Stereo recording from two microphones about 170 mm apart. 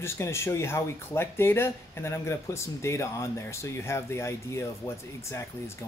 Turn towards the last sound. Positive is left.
turn(degrees=15)  # may be behind; listen again after turning